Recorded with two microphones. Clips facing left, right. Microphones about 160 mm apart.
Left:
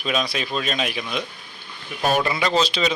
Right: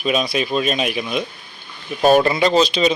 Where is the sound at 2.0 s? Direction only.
30° right (ahead or behind).